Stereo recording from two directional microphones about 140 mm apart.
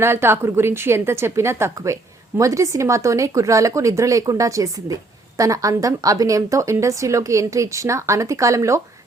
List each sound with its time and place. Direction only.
0.0 s a woman's voice: 20° right (ahead or behind)